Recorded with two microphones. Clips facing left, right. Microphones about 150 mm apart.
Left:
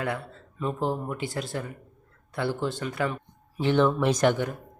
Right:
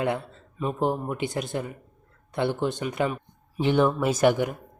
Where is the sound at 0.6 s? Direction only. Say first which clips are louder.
Right 2 dB; 15° right (ahead or behind).